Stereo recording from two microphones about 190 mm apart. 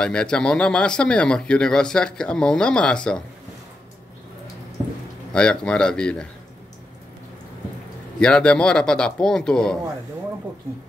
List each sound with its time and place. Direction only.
0.0 s speech: 5° left (ahead or behind)
5.3 s speech: 5° left (ahead or behind)
8.2 s speech: 5° left (ahead or behind)